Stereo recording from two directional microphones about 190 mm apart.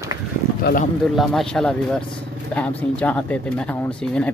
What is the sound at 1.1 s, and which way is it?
Speech, centre (ahead or behind).